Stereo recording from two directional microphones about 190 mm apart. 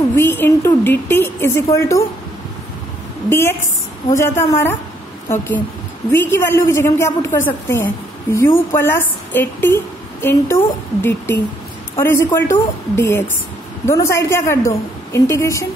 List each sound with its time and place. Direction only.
0.1 s a woman's voice: 10° left (ahead or behind)
3.3 s a woman's voice: 15° left (ahead or behind)
6.1 s a woman's voice: 10° left (ahead or behind)